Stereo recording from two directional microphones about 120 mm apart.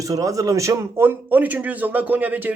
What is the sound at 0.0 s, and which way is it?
A man's voice, 30° right (ahead or behind).